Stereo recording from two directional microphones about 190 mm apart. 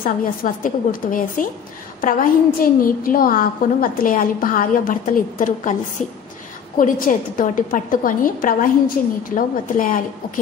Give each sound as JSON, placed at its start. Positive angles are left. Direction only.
{"t": 0.0, "sound": "a woman's voice", "side_deg": 45}
{"t": 6.8, "sound": "a woman's voice", "side_deg": 45}